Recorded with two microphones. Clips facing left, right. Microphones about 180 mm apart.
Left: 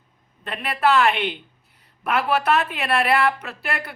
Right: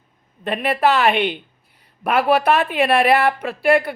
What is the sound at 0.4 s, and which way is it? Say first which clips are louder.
Speech: right 4 dB; 20° right (ahead or behind).